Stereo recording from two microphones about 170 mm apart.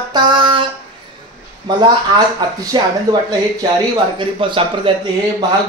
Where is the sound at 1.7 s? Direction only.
25° right (ahead or behind).